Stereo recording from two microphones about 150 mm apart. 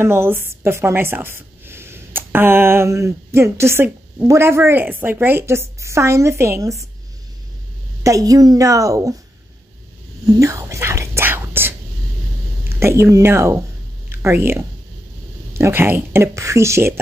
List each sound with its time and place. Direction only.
0.0 s a woman's voice: 15° right (ahead or behind)
8.0 s a woman's voice: 20° right (ahead or behind)
10.2 s whispering: 20° right (ahead or behind)
12.7 s a woman's voice: 15° right (ahead or behind)